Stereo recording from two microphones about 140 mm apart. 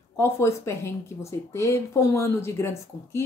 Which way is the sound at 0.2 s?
20° left (ahead or behind).